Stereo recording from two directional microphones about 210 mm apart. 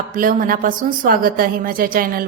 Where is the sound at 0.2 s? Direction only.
40° right (ahead or behind).